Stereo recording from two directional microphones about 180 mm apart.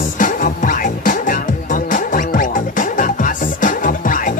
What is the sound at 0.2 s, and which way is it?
Music, 50° left (ahead or behind).